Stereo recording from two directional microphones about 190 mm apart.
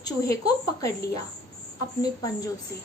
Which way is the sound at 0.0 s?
20° left (ahead or behind).